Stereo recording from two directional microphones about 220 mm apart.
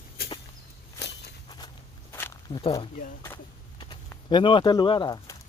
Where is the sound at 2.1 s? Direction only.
10° left (ahead or behind).